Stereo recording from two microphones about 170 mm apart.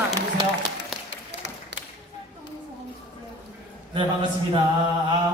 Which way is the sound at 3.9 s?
25° right (ahead or behind).